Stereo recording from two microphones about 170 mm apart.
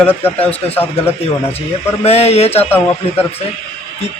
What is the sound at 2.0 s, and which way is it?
Mantra, 35° left (ahead or behind).